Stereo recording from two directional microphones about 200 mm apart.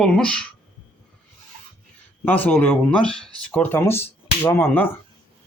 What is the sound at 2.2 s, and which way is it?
Speech, 10° left (ahead or behind).